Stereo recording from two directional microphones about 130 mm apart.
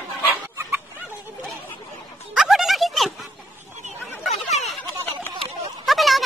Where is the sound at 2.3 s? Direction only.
Centre (ahead or behind).